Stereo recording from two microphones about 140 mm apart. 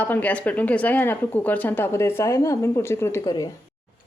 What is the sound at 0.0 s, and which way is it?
Speech, 10° left (ahead or behind).